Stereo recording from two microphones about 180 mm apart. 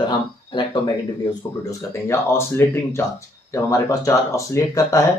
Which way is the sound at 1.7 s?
15° left (ahead or behind).